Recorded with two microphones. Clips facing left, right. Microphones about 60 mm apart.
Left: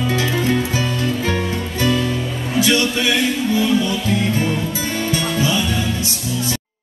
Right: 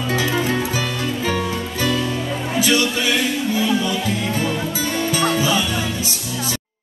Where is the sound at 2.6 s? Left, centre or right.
Right.